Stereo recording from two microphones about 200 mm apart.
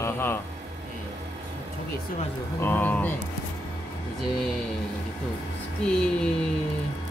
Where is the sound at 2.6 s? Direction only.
10° left (ahead or behind).